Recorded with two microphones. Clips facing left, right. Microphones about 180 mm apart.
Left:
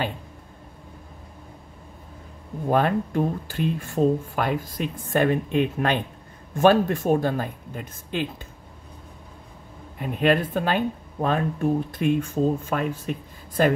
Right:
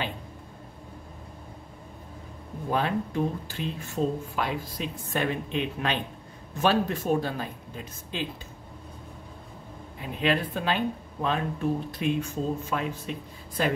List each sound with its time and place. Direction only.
2.7 s speech: 50° left (ahead or behind)
9.9 s speech: 50° left (ahead or behind)